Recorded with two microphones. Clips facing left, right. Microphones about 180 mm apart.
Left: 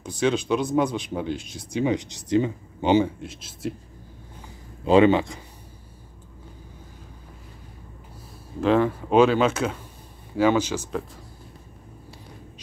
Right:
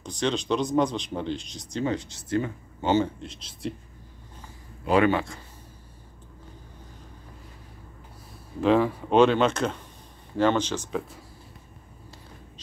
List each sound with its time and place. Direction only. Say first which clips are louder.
0.0 s speech: left 4 dB; 5° left (ahead or behind)
4.8 s speech: left 5 dB; 25° left (ahead or behind)
8.5 s speech: left 1 dB; centre (ahead or behind)